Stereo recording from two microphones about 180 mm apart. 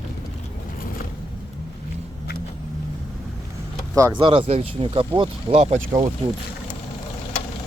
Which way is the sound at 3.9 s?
20° right (ahead or behind).